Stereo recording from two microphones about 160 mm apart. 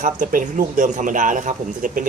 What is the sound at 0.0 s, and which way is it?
Speech, 55° right (ahead or behind).